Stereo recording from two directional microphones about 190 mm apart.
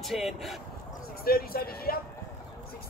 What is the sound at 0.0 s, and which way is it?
Speech, centre (ahead or behind).